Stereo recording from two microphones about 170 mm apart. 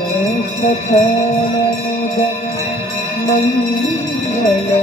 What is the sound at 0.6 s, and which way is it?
Music, 45° left (ahead or behind).